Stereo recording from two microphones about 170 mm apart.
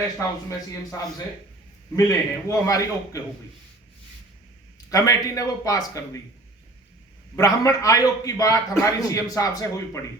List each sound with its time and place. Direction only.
0.9 s a man's voice: 15° left (ahead or behind)
4.9 s a man's voice: 20° left (ahead or behind)
7.3 s a man's voice: 20° left (ahead or behind)